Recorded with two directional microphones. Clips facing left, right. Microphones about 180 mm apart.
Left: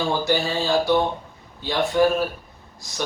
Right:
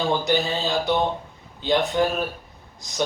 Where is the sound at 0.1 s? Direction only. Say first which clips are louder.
Even; 20° right (ahead or behind).